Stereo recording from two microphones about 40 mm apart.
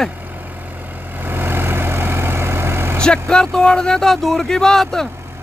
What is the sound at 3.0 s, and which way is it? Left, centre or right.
Speech, centre.